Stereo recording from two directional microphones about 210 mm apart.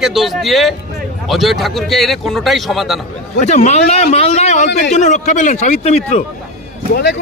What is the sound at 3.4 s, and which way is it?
A man's voice, 35° left (ahead or behind).